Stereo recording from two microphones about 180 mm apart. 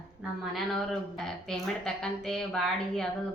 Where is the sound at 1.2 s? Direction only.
5° left (ahead or behind).